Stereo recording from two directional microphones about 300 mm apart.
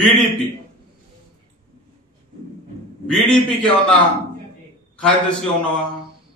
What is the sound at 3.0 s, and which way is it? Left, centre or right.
Speech, centre.